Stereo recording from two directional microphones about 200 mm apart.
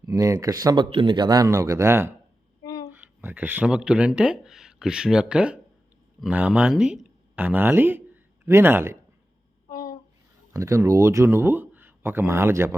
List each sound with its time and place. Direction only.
0.0 s speech: 15° right (ahead or behind)
9.6 s a sound: 15° left (ahead or behind)
10.5 s speech: 15° right (ahead or behind)